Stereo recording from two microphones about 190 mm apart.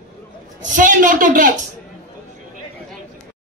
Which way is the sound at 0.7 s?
45° right (ahead or behind).